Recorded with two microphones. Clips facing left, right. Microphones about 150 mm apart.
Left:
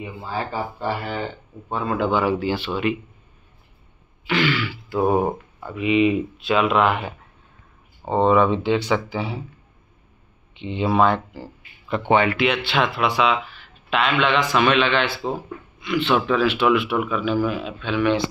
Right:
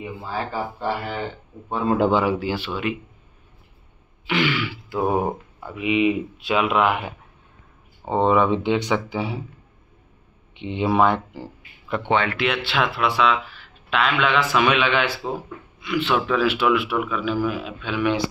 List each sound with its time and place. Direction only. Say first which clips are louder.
0.3 s speech: left 1 dB; 10° left (ahead or behind)
0.8 s speech: even; centre (ahead or behind)
2.2 s a man's voice: left 1 dB; 10° right (ahead or behind)
4.3 s a man's voice: left 1 dB; 20° right (ahead or behind)
4.9 s a man's voice: left 3 dB; 5° right (ahead or behind)
10.6 s a man's voice: even; 15° right (ahead or behind)
12.0 s a man's voice: left 4 dB; 10° left (ahead or behind); by 18.3 s 10° right (ahead or behind)